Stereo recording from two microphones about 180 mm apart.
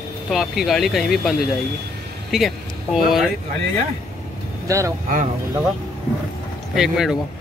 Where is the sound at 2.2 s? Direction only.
Centre (ahead or behind).